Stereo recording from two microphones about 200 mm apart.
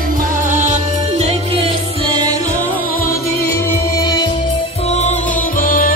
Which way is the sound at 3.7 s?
15° left (ahead or behind).